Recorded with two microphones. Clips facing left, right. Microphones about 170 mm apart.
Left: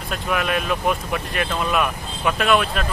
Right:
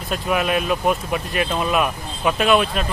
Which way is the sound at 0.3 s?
5° right (ahead or behind).